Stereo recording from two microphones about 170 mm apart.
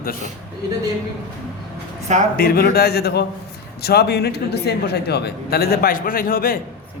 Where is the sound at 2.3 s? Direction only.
65° left (ahead or behind).